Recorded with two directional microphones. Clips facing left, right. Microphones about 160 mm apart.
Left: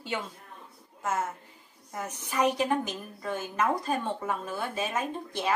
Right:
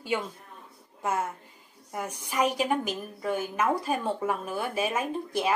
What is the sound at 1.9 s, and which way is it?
A woman's voice, 10° right (ahead or behind).